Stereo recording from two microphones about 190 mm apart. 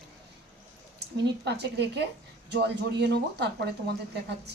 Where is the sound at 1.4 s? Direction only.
60° right (ahead or behind).